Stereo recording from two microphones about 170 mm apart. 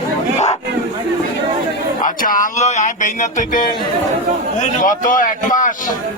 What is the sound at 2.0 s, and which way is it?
Music, 55° left (ahead or behind).